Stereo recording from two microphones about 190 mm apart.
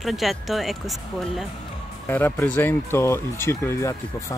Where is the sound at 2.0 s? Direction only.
10° left (ahead or behind).